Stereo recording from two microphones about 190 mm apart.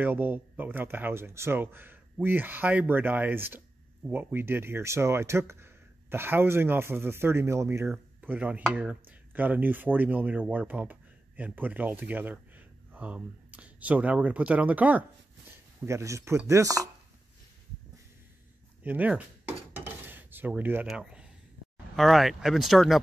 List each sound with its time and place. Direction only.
0.0 s speech: 10° right (ahead or behind)
18.8 s speech: 10° right (ahead or behind)
19.7 s dishes: 10° right (ahead or behind)
21.9 s speech: centre (ahead or behind)